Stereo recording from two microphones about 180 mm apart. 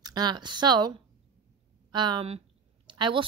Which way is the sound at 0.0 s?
20° right (ahead or behind).